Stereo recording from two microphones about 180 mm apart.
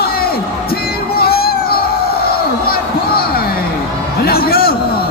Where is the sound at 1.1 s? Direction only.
60° left (ahead or behind).